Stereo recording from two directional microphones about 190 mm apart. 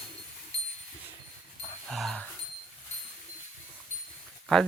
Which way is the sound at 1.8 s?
Centre (ahead or behind).